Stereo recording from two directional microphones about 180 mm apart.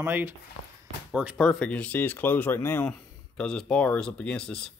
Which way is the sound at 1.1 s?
Centre (ahead or behind).